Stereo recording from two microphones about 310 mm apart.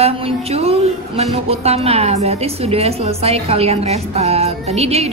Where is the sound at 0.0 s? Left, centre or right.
Centre.